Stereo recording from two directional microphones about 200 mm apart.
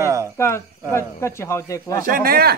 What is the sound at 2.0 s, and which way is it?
Speech, 45° right (ahead or behind).